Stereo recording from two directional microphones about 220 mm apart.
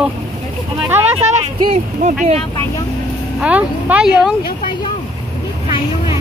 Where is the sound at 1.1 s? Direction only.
30° right (ahead or behind).